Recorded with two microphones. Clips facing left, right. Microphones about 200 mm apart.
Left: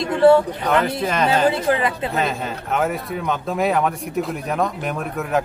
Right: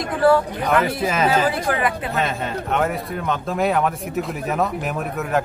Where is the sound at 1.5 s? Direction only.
25° left (ahead or behind).